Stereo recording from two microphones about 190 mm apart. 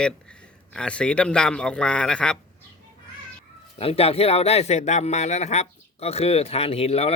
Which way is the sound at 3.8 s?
30° left (ahead or behind).